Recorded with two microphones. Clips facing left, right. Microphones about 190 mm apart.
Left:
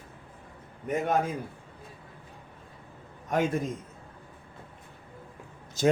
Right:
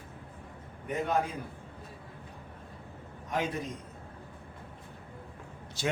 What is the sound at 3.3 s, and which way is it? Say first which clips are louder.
Speech: left 6 dB; 50° left (ahead or behind).